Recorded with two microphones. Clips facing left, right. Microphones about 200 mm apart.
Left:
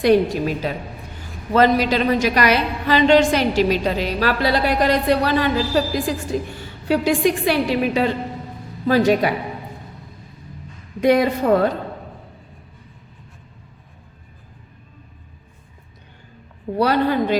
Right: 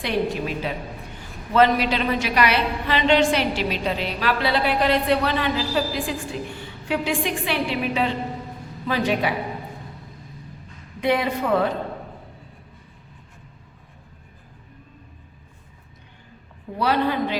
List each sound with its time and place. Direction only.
0.0 s a woman's voice: 40° left (ahead or behind)
11.0 s a woman's voice: 40° left (ahead or behind)
16.7 s a woman's voice: 45° left (ahead or behind)